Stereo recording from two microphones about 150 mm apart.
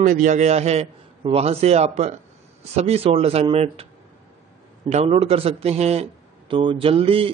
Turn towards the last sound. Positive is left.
turn(degrees=-40)  # may be behind; listen again after turning